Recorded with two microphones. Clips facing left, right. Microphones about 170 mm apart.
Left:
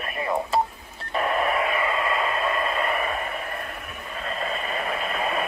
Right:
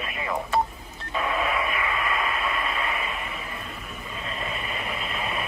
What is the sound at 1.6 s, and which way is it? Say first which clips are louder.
Radio: left 3 dB; 30° left (ahead or behind).